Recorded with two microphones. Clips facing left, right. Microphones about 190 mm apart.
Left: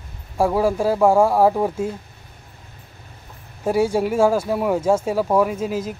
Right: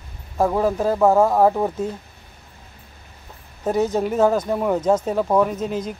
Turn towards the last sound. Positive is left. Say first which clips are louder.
# left 1 dB
turn(degrees=5)  # may be behind; listen again after turning